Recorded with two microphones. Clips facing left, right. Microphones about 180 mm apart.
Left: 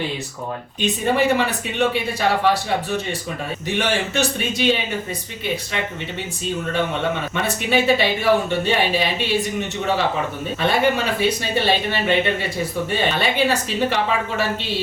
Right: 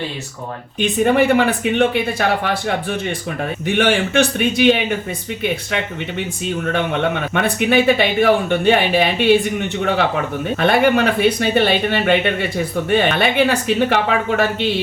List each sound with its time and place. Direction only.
0.8 s speech: 60° right (ahead or behind)
3.8 s speech: 60° right (ahead or behind)
7.3 s speech: 60° right (ahead or behind)
10.6 s speech: 60° right (ahead or behind)